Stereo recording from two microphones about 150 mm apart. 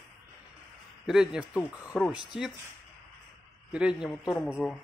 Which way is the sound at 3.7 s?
5° right (ahead or behind).